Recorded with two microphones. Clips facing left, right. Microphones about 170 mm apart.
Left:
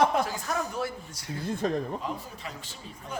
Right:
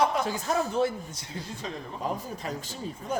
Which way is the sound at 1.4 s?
55° left (ahead or behind).